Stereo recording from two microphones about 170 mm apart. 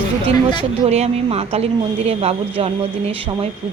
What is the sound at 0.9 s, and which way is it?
Speech, 40° right (ahead or behind).